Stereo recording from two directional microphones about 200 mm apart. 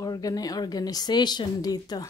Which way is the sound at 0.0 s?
20° left (ahead or behind).